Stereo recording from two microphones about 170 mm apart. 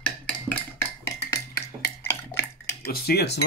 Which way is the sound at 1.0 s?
15° left (ahead or behind).